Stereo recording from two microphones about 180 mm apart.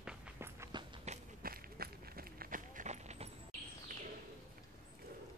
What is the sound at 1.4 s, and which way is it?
Run, 55° right (ahead or behind).